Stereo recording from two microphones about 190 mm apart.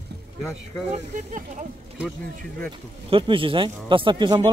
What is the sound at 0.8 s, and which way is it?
Speech, 40° right (ahead or behind).